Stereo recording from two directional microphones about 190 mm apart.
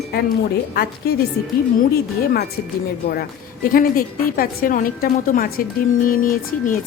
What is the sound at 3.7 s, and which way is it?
A woman's voice, 50° left (ahead or behind).